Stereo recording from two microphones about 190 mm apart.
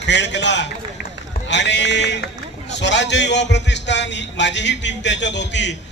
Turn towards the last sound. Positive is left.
turn(degrees=70)  # may be behind; listen again after turning